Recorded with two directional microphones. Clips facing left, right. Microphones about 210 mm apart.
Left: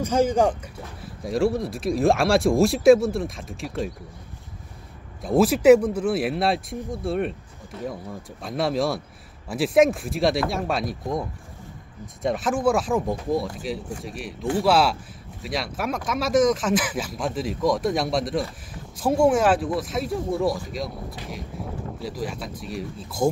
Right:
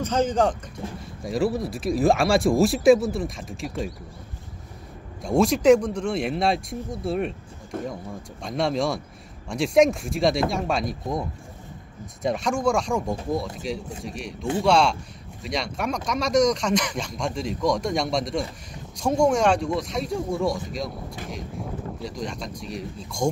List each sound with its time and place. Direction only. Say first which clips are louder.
0.0 s speech: left 2 dB; 10° left (ahead or behind)
1.2 s speech: left 2 dB; centre (ahead or behind)
5.2 s speech: left 2 dB; 5° left (ahead or behind)
7.7 s speech: right 2 dB; 50° right (ahead or behind)
8.4 s speech: even; 5° left (ahead or behind)